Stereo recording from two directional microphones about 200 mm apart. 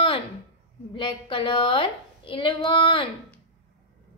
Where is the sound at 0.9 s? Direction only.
25° left (ahead or behind).